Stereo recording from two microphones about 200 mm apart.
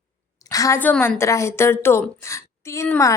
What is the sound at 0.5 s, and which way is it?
A woman's voice, 15° left (ahead or behind).